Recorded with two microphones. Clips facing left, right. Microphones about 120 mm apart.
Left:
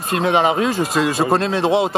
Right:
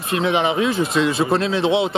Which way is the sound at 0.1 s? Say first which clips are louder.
Left 2 dB; 55° left (ahead or behind).